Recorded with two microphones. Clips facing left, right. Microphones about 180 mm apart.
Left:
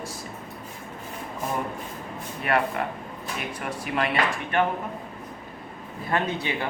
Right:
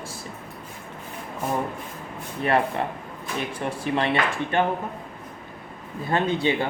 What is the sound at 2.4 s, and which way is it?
Speech, 30° right (ahead or behind).